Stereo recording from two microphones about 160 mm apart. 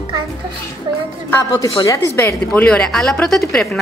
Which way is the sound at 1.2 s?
20° left (ahead or behind).